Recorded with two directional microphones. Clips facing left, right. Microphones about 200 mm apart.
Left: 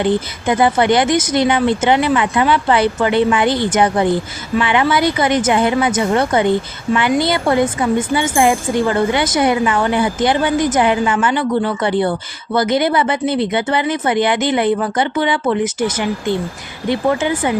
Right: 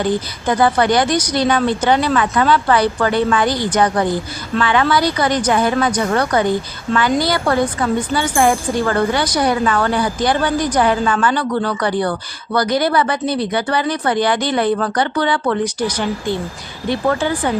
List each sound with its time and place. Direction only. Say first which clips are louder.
0.0 s a woman's voice: left 2 dB; 20° left (ahead or behind)